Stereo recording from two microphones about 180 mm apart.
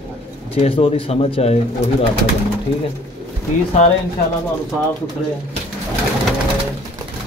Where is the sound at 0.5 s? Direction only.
30° left (ahead or behind).